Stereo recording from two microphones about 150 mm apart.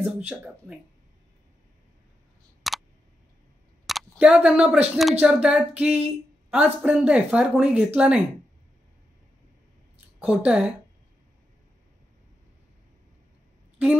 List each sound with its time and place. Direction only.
0.0 s speech: 10° right (ahead or behind)
2.6 s a sound: centre (ahead or behind)
3.8 s speech: centre (ahead or behind)
10.2 s speech: 5° right (ahead or behind)